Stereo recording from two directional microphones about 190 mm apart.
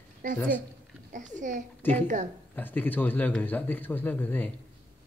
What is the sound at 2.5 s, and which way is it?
A man's voice, 10° left (ahead or behind).